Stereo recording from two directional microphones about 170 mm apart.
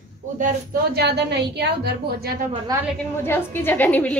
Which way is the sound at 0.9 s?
80° right.